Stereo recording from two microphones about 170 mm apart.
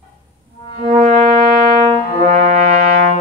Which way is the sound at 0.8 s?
40° right (ahead or behind).